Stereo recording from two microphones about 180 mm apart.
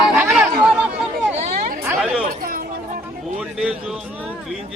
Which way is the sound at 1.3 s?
35° right (ahead or behind).